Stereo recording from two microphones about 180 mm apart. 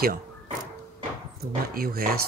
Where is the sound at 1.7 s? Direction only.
55° right (ahead or behind).